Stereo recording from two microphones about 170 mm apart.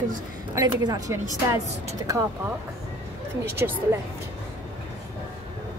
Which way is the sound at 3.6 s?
15° right (ahead or behind).